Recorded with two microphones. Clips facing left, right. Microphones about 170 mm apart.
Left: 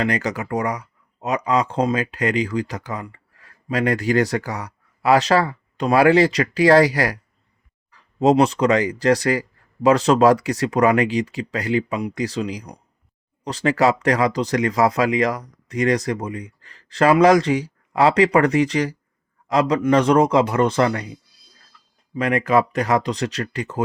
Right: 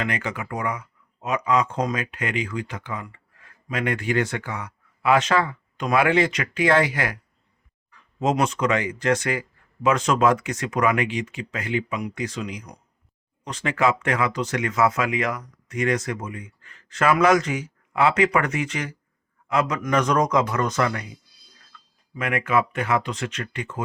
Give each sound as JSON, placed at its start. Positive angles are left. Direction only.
{"t": 0.0, "sound": "speech", "side_deg": 40}
{"t": 22.1, "sound": "speech", "side_deg": 35}